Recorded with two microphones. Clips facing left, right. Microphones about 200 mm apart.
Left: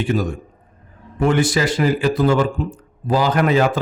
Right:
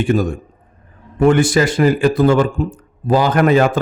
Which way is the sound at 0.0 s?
50° right (ahead or behind).